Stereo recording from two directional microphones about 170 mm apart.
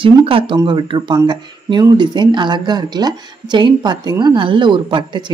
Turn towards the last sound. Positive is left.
turn(degrees=-25)  # may be behind; listen again after turning